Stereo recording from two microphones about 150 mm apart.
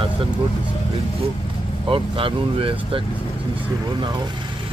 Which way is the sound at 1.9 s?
35° right (ahead or behind).